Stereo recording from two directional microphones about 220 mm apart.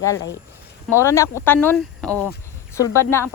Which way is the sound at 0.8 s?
10° left (ahead or behind).